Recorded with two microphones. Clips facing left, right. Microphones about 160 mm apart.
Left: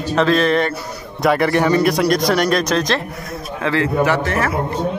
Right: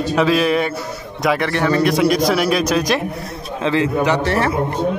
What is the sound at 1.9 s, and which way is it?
A man's voice, 5° right (ahead or behind).